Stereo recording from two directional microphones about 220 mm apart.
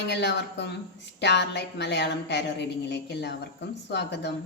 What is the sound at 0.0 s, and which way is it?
A woman's voice, 50° left (ahead or behind).